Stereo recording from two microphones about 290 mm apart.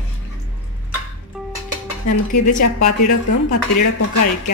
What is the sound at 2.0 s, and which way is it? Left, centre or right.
A woman's voice, left.